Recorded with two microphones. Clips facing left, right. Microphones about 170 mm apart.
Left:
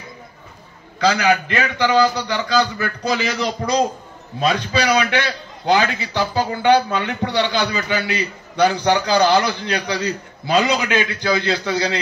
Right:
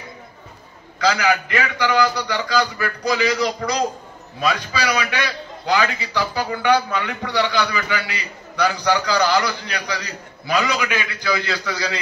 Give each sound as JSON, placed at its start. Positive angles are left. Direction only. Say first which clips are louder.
{"t": 0.9, "sound": "a man's voice", "louder": "left 2 dB", "side_deg": 25}